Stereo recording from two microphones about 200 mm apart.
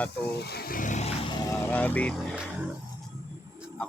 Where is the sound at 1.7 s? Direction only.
10° left (ahead or behind).